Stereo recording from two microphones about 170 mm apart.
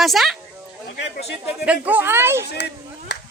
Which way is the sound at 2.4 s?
80° left.